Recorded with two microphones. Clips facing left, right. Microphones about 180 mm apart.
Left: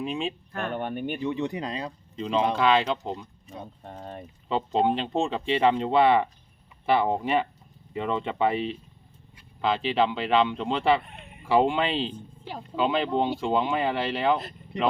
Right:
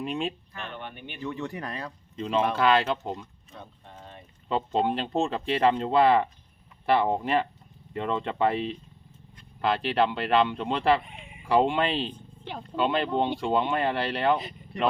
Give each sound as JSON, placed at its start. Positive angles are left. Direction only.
{"t": 0.0, "sound": "speech", "side_deg": 0}
{"t": 0.5, "sound": "speech", "side_deg": 50}
{"t": 1.2, "sound": "speech", "side_deg": 20}
{"t": 2.1, "sound": "speech", "side_deg": -5}
{"t": 3.2, "sound": "speech", "side_deg": 15}
{"t": 3.8, "sound": "a sound", "side_deg": 45}
{"t": 4.4, "sound": "speech", "side_deg": 0}